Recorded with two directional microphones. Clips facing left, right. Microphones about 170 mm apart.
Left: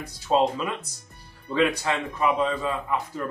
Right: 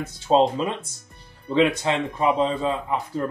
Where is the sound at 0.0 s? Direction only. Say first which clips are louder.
Right 3 dB; 25° right (ahead or behind).